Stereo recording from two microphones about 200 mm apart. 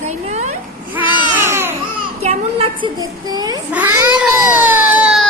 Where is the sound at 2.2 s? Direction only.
30° right (ahead or behind).